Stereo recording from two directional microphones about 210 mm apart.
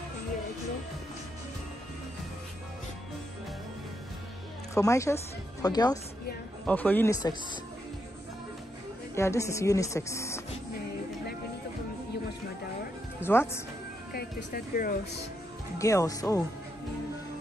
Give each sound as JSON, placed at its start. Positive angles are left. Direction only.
{"t": 4.7, "sound": "speech", "side_deg": 15}
{"t": 6.6, "sound": "speech", "side_deg": 10}
{"t": 9.1, "sound": "speech", "side_deg": 15}
{"t": 13.2, "sound": "speech", "side_deg": 10}
{"t": 14.1, "sound": "speech", "side_deg": 45}
{"t": 15.8, "sound": "speech", "side_deg": 15}